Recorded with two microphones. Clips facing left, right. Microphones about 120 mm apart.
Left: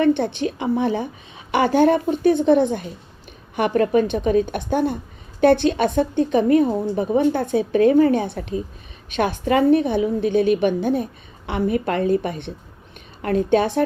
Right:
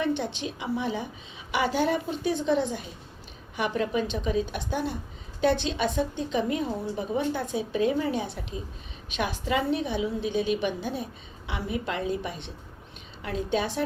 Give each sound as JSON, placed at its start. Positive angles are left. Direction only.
{"t": 0.0, "sound": "a woman's voice", "side_deg": 55}